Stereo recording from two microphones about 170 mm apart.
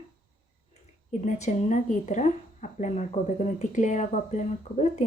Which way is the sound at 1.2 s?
45° left (ahead or behind).